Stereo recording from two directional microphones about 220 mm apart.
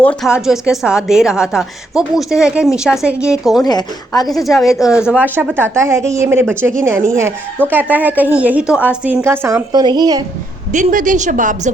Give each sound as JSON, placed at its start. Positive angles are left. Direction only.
{"t": 0.0, "sound": "a woman's voice", "side_deg": 5}
{"t": 3.6, "sound": "speech", "side_deg": 15}
{"t": 4.3, "sound": "a woman's voice", "side_deg": 0}
{"t": 10.7, "sound": "a woman's voice", "side_deg": -35}